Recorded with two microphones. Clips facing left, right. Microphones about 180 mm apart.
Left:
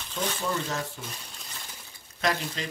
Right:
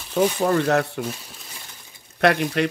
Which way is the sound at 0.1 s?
65° right (ahead or behind).